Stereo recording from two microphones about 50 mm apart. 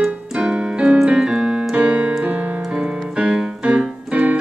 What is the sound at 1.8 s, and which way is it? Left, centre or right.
Keyboard, right.